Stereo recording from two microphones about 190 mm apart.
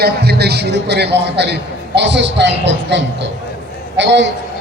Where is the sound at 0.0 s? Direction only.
55° right (ahead or behind).